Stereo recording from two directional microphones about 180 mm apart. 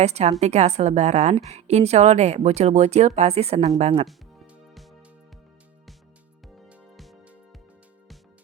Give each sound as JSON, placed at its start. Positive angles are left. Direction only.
{"t": 0.0, "sound": "a woman's voice", "side_deg": -35}
{"t": 4.5, "sound": "music", "side_deg": 0}
{"t": 6.7, "sound": "music", "side_deg": 0}